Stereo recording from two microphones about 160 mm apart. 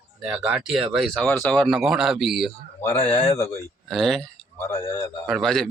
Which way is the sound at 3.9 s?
Centre (ahead or behind).